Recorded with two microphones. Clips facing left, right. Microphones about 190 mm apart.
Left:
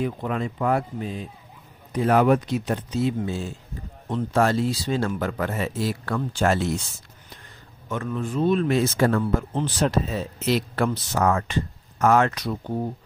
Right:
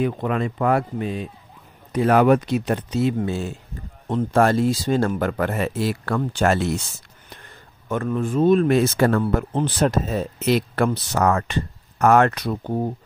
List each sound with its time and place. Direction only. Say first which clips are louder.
0.0 s speech: right 4 dB; 70° right (ahead or behind)
4.1 s speech: right 3 dB; 55° right (ahead or behind)
7.9 s speech: right 5 dB; 50° right (ahead or behind)